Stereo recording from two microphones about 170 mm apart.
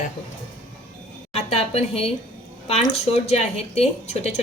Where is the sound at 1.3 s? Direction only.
35° left (ahead or behind).